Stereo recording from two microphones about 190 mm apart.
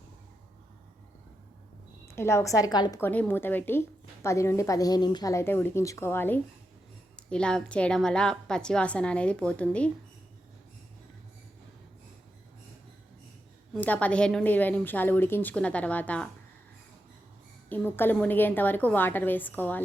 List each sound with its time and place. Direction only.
2.1 s a woman's voice: 15° left (ahead or behind)
3.0 s a woman's voice: 10° left (ahead or behind)
13.7 s a woman's voice: 10° left (ahead or behind)
17.7 s a woman's voice: 10° left (ahead or behind)